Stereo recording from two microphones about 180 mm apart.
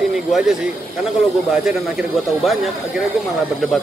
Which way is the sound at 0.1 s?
Centre (ahead or behind).